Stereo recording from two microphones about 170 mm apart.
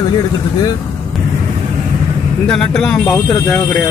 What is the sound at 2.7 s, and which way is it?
Speech, 5° left (ahead or behind).